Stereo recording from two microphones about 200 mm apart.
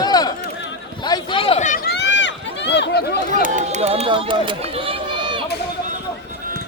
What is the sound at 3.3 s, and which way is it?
Speech, 35° right (ahead or behind).